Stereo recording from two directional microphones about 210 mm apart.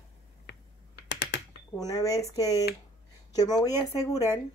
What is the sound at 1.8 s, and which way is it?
A woman's voice, 15° left (ahead or behind).